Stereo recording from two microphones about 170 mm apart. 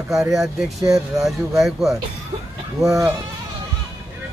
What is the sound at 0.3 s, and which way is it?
Speech, centre (ahead or behind).